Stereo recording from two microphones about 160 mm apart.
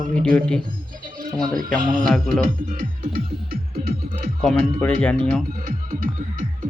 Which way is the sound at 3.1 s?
65° right (ahead or behind).